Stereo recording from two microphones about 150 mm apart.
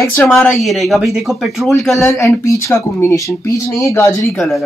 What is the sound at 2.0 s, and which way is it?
Speech, 20° left (ahead or behind).